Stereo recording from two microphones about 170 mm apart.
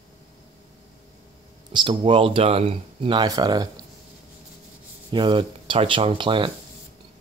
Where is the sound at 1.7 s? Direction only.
30° right (ahead or behind).